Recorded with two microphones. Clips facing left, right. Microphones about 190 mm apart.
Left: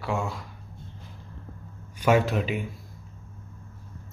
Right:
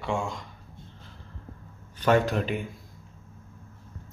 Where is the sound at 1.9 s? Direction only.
10° left (ahead or behind).